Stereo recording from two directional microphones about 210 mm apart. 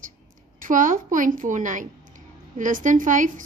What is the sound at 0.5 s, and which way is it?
Speech, 40° right (ahead or behind).